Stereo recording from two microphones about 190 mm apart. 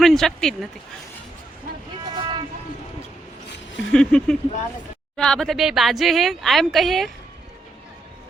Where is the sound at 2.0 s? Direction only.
25° right (ahead or behind).